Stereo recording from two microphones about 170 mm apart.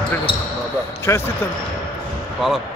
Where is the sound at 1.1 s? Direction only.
15° left (ahead or behind).